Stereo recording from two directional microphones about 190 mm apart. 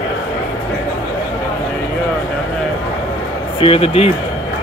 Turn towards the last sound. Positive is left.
turn(degrees=30)  # may be behind; listen again after turning